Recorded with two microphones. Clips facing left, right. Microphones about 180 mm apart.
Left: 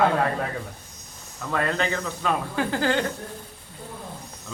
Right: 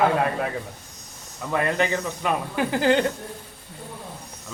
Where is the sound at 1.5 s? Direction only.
15° right (ahead or behind).